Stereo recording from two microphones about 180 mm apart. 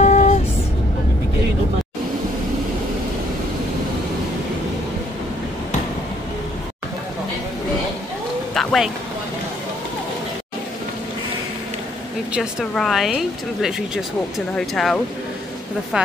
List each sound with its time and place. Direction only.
0.0 s vehicle: 40° left (ahead or behind)
8.5 s vehicle: centre (ahead or behind)
12.4 s speech: centre (ahead or behind)